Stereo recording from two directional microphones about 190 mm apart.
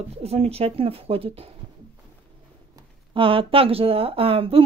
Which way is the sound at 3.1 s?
25° right (ahead or behind).